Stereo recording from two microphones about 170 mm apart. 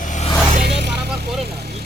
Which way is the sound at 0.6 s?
75° right (ahead or behind).